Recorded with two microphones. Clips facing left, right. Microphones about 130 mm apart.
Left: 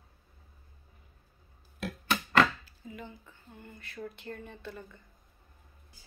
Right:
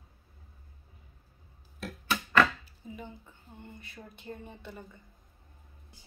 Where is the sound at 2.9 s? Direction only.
20° right (ahead or behind).